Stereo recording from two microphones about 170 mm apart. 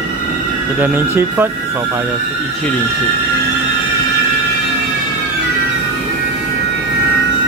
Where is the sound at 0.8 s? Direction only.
10° right (ahead or behind).